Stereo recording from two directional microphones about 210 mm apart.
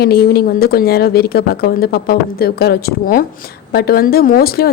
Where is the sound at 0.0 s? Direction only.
50° left (ahead or behind).